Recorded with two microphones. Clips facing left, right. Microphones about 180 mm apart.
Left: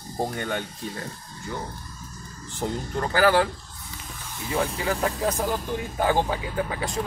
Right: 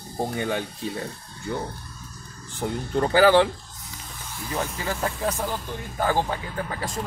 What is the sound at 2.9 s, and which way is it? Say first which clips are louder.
Speech: right 4 dB; 25° right (ahead or behind).